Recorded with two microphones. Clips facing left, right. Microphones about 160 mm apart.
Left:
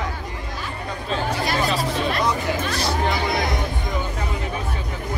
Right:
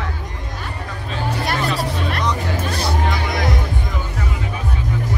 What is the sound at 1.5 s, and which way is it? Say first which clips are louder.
Chatter: right 1 dB; 60° right (ahead or behind).